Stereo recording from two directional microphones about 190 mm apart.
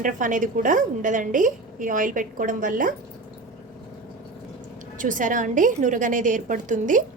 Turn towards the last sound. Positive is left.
turn(degrees=-40)  # may be behind; listen again after turning